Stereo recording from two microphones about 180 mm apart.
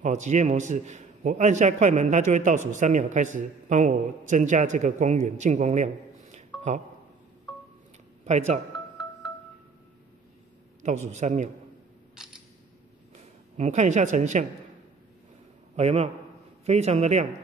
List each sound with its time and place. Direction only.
0.0 s a man's voice: 40° right (ahead or behind)
6.3 s a sound: 40° right (ahead or behind)
8.3 s a man's voice: 40° right (ahead or behind)
10.8 s a man's voice: 40° right (ahead or behind)
13.6 s a man's voice: 40° right (ahead or behind)
15.7 s a man's voice: 35° right (ahead or behind)